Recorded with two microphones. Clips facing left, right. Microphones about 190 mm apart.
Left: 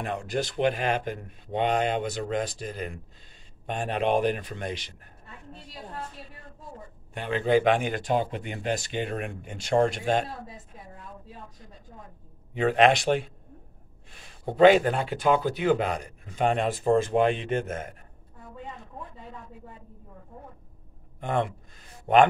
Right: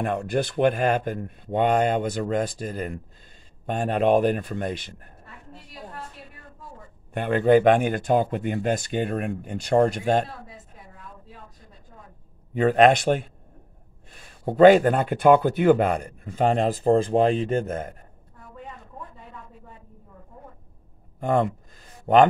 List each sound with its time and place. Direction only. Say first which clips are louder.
0.0 s speech: right 5 dB; 55° right (ahead or behind)
7.2 s speech: right 5 dB; 50° right (ahead or behind)
12.5 s speech: right 4 dB; 45° right (ahead or behind)
14.4 s speech: right 4 dB; 45° right (ahead or behind)
16.3 s a man's voice: right 3 dB; 35° right (ahead or behind)
22.0 s a man's voice: right 3 dB; 40° right (ahead or behind)